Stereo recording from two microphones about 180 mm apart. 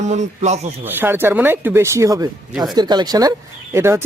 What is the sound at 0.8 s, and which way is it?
Speech, 10° right (ahead or behind).